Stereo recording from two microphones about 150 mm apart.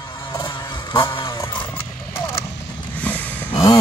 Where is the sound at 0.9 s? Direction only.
35° left (ahead or behind).